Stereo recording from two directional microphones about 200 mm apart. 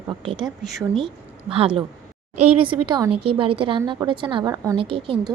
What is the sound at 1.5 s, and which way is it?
Speech, 30° right (ahead or behind).